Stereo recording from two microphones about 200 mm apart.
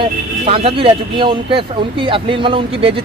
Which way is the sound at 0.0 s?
30° right (ahead or behind).